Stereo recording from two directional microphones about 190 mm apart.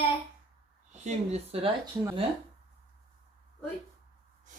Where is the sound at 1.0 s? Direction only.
35° right (ahead or behind).